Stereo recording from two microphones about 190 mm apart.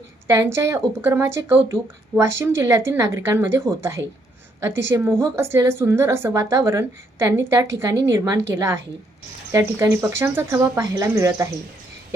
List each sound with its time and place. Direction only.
0.3 s a woman's voice: 15° right (ahead or behind)